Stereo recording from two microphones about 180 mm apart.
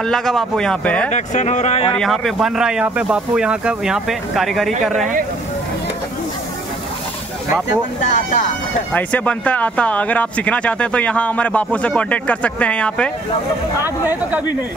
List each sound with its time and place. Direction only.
0.0 s speech: 5° left (ahead or behind)
1.1 s speech: 40° left (ahead or behind)
1.9 s speech: centre (ahead or behind)
8.1 s speech: 45° left (ahead or behind)
8.9 s speech: 10° left (ahead or behind)
13.7 s speech: 10° right (ahead or behind)